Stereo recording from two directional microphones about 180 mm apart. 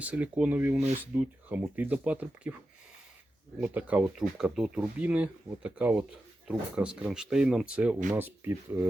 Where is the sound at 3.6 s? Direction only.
10° right (ahead or behind).